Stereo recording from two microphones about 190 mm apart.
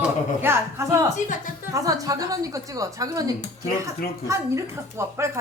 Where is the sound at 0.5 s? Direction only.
10° right (ahead or behind).